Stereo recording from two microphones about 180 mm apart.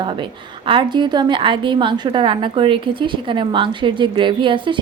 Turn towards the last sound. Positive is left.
turn(degrees=-25)  # may be behind; listen again after turning